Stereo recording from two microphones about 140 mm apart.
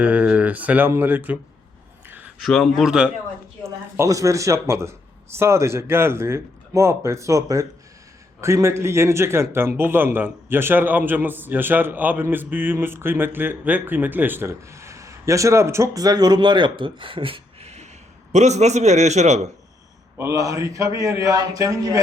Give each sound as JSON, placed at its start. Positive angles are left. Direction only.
{"t": 0.0, "sound": "a man's voice", "side_deg": -10}
{"t": 2.4, "sound": "speech", "side_deg": 5}
{"t": 3.6, "sound": "a man's voice", "side_deg": -20}
{"t": 20.1, "sound": "speech", "side_deg": -20}